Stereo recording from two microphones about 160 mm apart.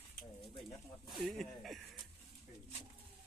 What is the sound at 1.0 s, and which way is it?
Speech, centre (ahead or behind).